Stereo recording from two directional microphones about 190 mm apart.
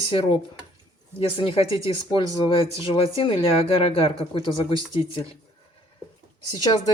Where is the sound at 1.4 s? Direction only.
25° left (ahead or behind).